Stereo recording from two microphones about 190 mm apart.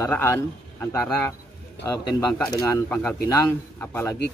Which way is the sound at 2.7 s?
10° left (ahead or behind).